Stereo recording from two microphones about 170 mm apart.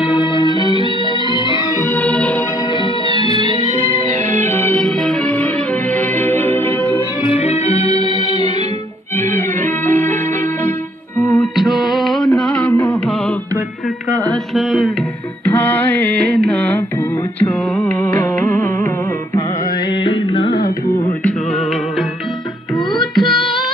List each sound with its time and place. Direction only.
0.0 s music: 30° left (ahead or behind); by 2.4 s 10° left (ahead or behind)
2.7 s music: 30° left (ahead or behind)
4.4 s music: 10° left (ahead or behind)
7.2 s music: 35° left (ahead or behind)
9.1 s music: 10° left (ahead or behind)
11.3 s music: centre (ahead or behind)
14.5 s music: centre (ahead or behind)
19.9 s music: 30° left (ahead or behind)
22.9 s music: centre (ahead or behind)